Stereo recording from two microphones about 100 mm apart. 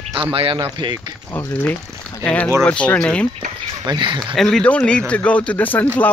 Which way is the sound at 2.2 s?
15° left (ahead or behind).